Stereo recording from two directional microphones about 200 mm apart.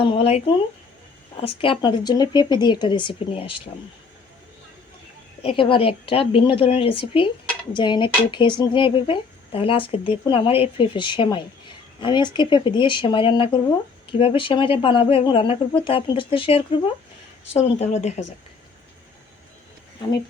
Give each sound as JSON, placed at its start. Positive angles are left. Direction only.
{"t": 0.0, "sound": "speech", "side_deg": 25}
{"t": 5.4, "sound": "speech", "side_deg": 25}